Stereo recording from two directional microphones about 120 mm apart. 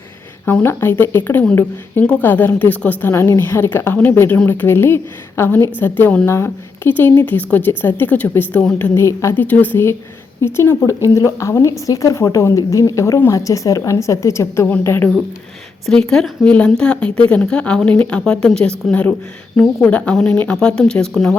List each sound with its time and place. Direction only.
0.4 s a woman's voice: 20° left (ahead or behind)